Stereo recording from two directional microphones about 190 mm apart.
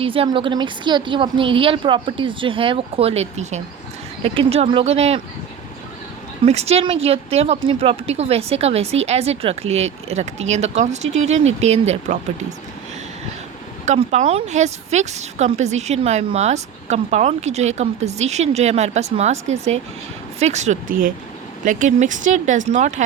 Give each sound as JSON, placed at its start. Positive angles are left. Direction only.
{"t": 0.0, "sound": "a woman's voice", "side_deg": -30}
{"t": 6.4, "sound": "speech", "side_deg": -35}
{"t": 13.8, "sound": "speech", "side_deg": -35}